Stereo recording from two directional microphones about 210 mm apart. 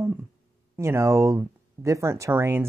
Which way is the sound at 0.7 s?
15° right (ahead or behind).